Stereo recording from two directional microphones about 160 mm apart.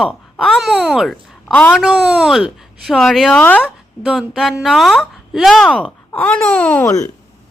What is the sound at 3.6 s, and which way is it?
A woman's voice, 5° right (ahead or behind).